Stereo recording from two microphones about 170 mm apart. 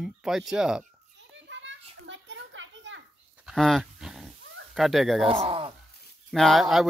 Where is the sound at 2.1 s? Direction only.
90° right.